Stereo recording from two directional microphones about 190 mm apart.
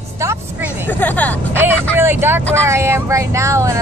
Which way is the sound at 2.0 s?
10° right (ahead or behind).